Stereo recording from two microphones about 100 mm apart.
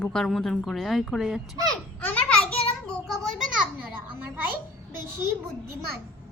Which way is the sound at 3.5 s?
10° right (ahead or behind).